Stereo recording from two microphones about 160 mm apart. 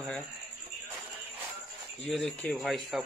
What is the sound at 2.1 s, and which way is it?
Speech, 5° left (ahead or behind).